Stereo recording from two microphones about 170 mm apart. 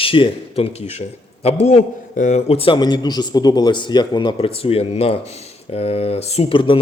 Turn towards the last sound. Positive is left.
turn(degrees=30)  # may be behind; listen again after turning